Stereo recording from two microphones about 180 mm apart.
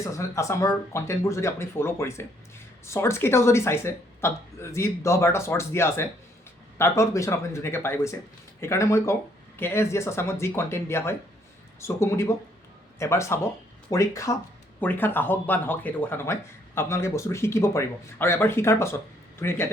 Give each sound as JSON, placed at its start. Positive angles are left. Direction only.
{"t": 0.0, "sound": "speech", "side_deg": 15}